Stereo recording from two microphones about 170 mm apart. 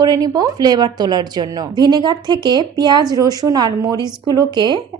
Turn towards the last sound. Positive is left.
turn(degrees=-25)  # may be behind; listen again after turning